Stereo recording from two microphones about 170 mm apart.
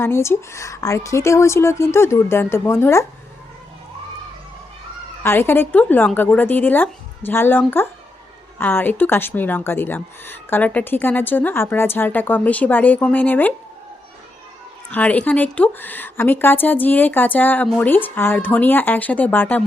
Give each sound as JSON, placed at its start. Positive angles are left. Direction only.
{"t": 0.0, "sound": "speech", "side_deg": 15}
{"t": 5.2, "sound": "speech", "side_deg": 15}
{"t": 14.8, "sound": "speech", "side_deg": 10}